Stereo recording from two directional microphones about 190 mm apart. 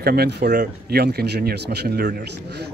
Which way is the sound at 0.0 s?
55° right (ahead or behind).